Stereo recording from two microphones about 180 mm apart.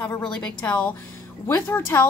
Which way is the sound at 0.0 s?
10° left (ahead or behind).